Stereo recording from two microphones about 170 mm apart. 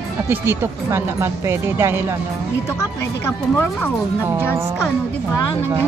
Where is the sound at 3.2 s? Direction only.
15° left (ahead or behind).